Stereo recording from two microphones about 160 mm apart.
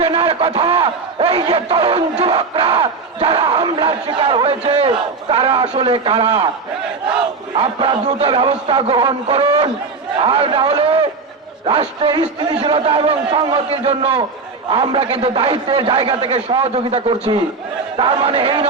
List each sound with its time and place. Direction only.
0.0 s a man's voice: 35° right (ahead or behind)
1.5 s battle cry: 35° right (ahead or behind)
5.7 s a man's voice: 35° right (ahead or behind)
7.5 s a man's voice: 35° right (ahead or behind)